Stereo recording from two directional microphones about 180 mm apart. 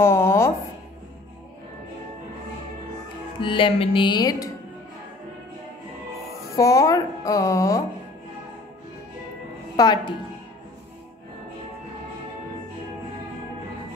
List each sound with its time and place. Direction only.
0.0 s a sound: 15° left (ahead or behind)
3.3 s music: 30° left (ahead or behind)
6.5 s speech: 20° left (ahead or behind)
9.8 s music: 25° left (ahead or behind)